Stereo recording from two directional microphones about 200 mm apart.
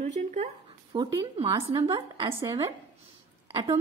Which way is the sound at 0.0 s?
35° right (ahead or behind).